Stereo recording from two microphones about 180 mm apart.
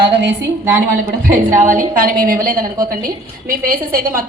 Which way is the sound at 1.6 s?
45° right (ahead or behind).